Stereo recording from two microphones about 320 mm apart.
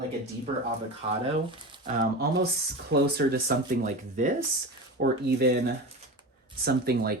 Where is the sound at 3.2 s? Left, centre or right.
Right.